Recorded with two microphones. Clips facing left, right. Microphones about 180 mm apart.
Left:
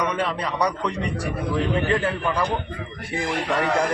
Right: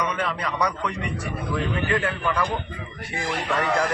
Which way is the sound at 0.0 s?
30° left (ahead or behind).